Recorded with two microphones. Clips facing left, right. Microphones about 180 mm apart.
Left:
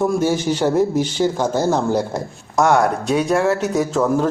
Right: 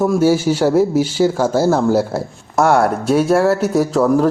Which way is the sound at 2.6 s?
20° left (ahead or behind).